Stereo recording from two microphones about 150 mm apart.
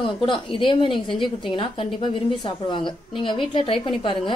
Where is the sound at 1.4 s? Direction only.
35° left (ahead or behind).